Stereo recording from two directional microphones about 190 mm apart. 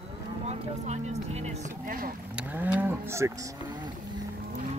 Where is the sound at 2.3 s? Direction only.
10° right (ahead or behind).